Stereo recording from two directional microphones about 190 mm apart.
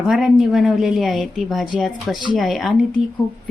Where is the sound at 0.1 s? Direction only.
Centre (ahead or behind).